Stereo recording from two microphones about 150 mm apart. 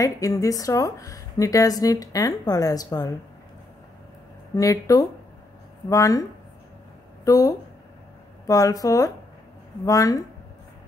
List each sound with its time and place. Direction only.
0.0 s a woman's voice: 20° left (ahead or behind)
4.6 s a woman's voice: 25° left (ahead or behind)
7.2 s a woman's voice: 25° left (ahead or behind)